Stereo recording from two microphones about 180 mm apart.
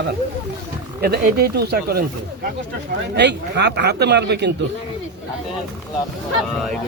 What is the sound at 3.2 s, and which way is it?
Speech, 70° right (ahead or behind).